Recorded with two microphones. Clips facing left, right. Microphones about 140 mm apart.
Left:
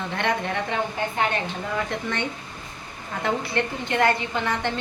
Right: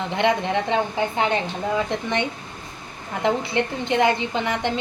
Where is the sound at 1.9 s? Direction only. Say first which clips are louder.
Right 3 dB; 20° right (ahead or behind).